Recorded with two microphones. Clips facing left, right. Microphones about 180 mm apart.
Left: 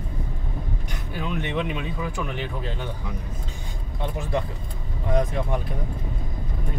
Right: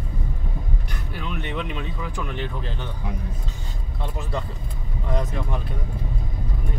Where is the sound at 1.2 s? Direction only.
10° left (ahead or behind).